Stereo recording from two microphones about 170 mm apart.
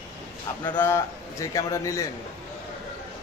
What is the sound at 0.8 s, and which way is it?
Speech, 15° left (ahead or behind).